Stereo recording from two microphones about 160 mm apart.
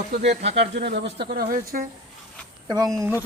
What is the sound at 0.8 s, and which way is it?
Speech, 90° right.